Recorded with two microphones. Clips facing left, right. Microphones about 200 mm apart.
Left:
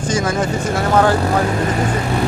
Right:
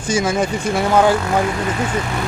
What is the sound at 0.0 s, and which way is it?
Speech, 10° right (ahead or behind).